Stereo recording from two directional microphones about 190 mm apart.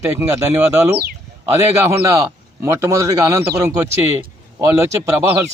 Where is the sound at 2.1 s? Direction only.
15° right (ahead or behind).